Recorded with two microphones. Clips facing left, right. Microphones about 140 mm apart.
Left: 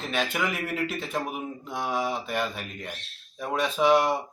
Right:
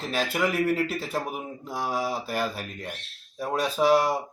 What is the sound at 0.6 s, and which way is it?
Speech, 35° right (ahead or behind).